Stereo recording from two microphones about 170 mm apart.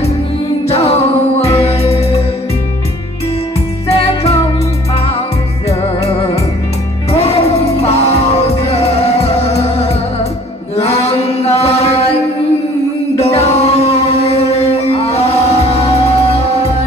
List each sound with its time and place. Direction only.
0.7 s music: 35° left (ahead or behind)
3.9 s music: 35° left (ahead or behind)
5.7 s music: 40° left (ahead or behind)
10.8 s chant: 35° left (ahead or behind)
13.2 s music: 35° left (ahead or behind)